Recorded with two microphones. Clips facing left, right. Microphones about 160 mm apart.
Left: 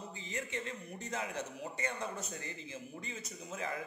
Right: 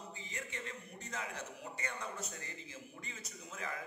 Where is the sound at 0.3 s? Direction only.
20° left (ahead or behind).